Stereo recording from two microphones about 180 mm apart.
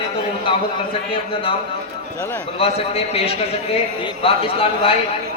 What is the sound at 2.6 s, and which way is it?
Speech, 35° left (ahead or behind).